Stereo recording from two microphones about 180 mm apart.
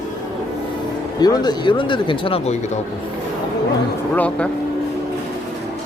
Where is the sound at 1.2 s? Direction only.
25° left (ahead or behind).